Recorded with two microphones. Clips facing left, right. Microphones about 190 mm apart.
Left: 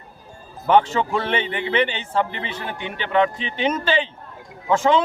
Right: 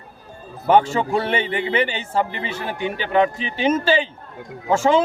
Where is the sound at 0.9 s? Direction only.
40° right (ahead or behind).